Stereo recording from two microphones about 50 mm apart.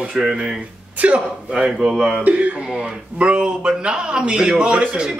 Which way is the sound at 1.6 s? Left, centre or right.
Centre.